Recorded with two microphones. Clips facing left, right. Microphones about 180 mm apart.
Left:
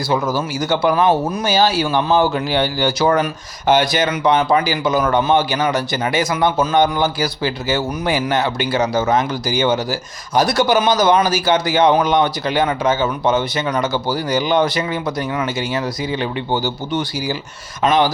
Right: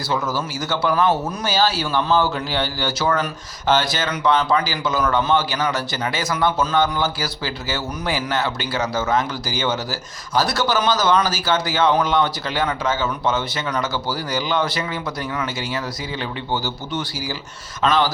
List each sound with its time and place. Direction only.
0.1 s a man's voice: 15° left (ahead or behind)